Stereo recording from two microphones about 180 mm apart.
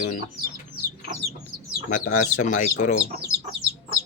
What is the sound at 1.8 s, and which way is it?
Speech, 45° left (ahead or behind).